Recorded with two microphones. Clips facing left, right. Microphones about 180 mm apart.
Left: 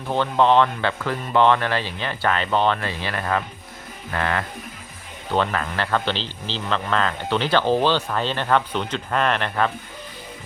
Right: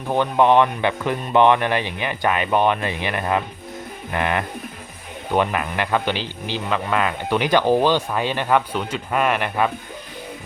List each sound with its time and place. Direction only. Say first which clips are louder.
0.1 s speech: right 2 dB; 15° right (ahead or behind)